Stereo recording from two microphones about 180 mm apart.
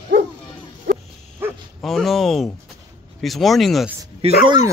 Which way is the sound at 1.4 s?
10° right (ahead or behind).